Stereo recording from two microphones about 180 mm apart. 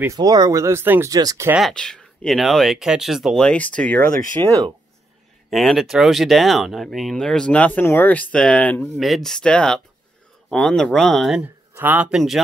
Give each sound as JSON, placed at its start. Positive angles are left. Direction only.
{"t": 0.0, "sound": "speech", "side_deg": -20}
{"t": 1.5, "sound": "speech", "side_deg": 0}
{"t": 4.3, "sound": "speech", "side_deg": -20}
{"t": 5.5, "sound": "speech", "side_deg": 0}